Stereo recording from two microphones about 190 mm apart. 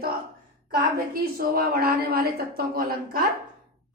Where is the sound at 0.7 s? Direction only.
50° right (ahead or behind).